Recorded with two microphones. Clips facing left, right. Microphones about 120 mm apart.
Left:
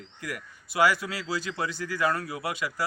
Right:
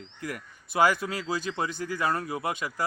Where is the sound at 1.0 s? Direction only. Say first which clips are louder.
Right 1 dB; 20° right (ahead or behind).